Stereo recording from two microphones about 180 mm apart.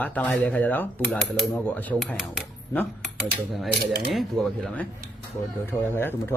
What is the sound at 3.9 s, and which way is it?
Speech, centre (ahead or behind).